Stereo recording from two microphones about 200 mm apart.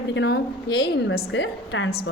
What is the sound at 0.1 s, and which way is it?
A woman's voice, 60° left (ahead or behind).